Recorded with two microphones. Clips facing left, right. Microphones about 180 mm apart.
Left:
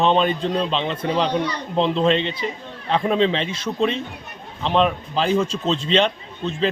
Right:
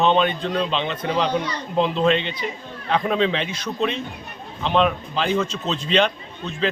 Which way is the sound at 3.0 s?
30° left (ahead or behind).